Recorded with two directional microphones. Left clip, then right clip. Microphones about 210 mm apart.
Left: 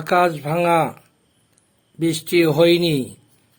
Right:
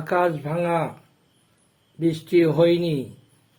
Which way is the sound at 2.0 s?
30° left (ahead or behind).